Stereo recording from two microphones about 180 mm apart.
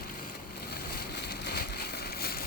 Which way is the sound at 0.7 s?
65° left (ahead or behind).